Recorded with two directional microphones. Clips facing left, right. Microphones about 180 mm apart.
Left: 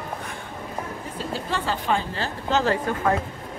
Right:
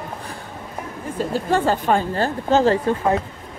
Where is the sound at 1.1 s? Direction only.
45° right (ahead or behind).